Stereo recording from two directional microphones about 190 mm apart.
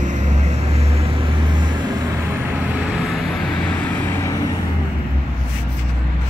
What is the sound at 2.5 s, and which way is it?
Vehicle, 10° right (ahead or behind).